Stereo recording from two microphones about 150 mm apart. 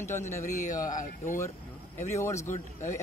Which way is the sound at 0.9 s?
60° left (ahead or behind).